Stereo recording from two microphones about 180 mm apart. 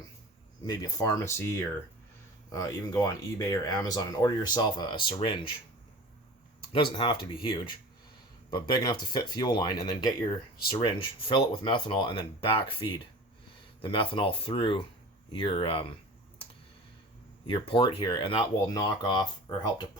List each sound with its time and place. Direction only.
0.7 s speech: 20° left (ahead or behind)
6.7 s speech: 25° left (ahead or behind)
8.4 s speech: 25° left (ahead or behind)
17.4 s speech: 30° left (ahead or behind)